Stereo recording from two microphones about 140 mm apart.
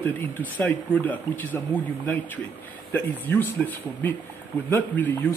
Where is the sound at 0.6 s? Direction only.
10° left (ahead or behind).